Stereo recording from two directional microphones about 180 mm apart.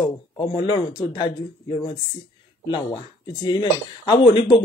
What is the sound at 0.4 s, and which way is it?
Speech, 25° left (ahead or behind).